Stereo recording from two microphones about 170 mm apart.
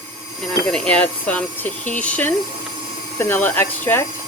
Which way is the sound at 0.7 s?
5° left (ahead or behind).